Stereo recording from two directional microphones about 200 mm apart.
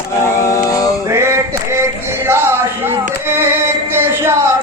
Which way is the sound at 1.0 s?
15° right (ahead or behind).